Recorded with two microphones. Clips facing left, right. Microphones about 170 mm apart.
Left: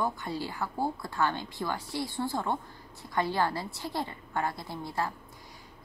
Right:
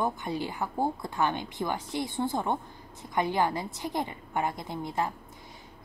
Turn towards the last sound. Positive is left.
turn(degrees=-20)  # may be behind; listen again after turning